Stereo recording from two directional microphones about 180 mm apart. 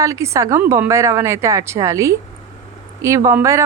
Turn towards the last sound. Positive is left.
turn(degrees=-15)  # may be behind; listen again after turning